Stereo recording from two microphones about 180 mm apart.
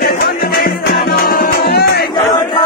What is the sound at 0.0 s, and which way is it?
Music, 60° left (ahead or behind).